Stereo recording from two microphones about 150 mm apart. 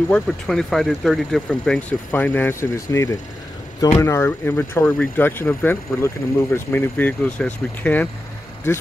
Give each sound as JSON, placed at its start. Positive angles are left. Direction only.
{"t": 0.1, "sound": "speech", "side_deg": 5}